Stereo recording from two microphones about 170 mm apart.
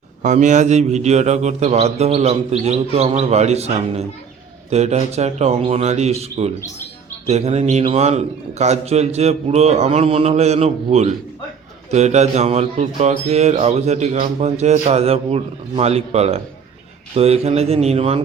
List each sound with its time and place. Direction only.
0.2 s a man's voice: 45° right (ahead or behind)